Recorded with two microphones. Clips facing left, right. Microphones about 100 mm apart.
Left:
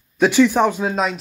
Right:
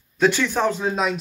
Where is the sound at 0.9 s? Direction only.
Centre (ahead or behind).